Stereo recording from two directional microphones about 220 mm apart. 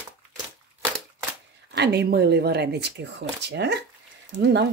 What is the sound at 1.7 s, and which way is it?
Speech, 50° right (ahead or behind).